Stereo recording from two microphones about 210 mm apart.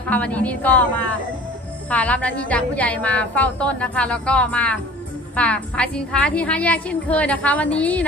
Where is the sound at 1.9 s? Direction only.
5° left (ahead or behind).